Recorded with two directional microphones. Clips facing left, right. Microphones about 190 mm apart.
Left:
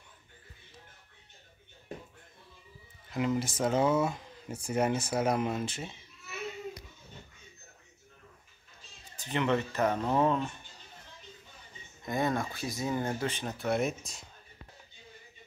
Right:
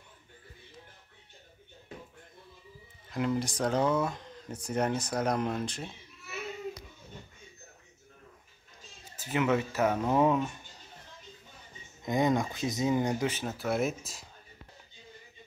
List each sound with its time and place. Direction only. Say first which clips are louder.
3.1 s speech: even; centre (ahead or behind)
9.1 s speech: right 1 dB; 5° right (ahead or behind)
12.0 s speech: right 4 dB; 15° right (ahead or behind); by 14.2 s centre (ahead or behind)